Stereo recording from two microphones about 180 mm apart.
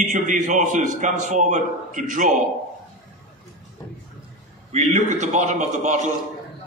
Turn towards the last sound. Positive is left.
turn(degrees=-40)  # may be behind; listen again after turning